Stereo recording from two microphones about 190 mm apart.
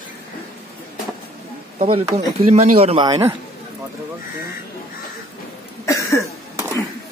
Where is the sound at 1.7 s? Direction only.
30° right (ahead or behind).